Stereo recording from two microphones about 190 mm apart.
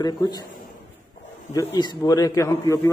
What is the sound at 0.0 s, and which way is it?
Speech, 20° left (ahead or behind).